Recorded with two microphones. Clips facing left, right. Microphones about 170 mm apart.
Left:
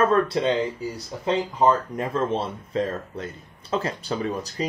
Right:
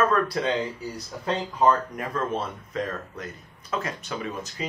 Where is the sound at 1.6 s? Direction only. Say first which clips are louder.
Even; 25° left (ahead or behind).